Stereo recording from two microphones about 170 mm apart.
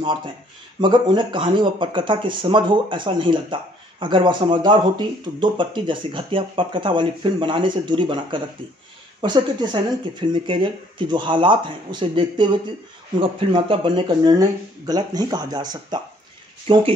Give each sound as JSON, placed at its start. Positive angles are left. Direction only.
{"t": 0.0, "sound": "speech", "side_deg": -30}